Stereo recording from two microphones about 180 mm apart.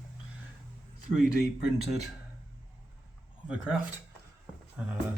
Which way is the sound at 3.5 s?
5° right (ahead or behind).